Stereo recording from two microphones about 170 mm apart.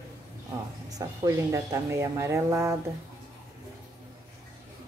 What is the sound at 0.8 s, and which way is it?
Speech, 20° right (ahead or behind).